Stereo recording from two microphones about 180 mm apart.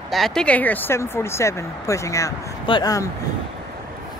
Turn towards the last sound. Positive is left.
turn(degrees=20)  # may be behind; listen again after turning